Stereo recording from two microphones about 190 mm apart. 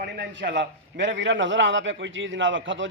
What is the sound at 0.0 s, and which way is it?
A man's voice, 65° right (ahead or behind).